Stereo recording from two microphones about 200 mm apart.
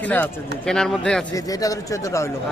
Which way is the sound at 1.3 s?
15° left (ahead or behind).